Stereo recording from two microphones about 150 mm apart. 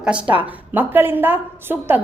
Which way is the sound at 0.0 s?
10° right (ahead or behind).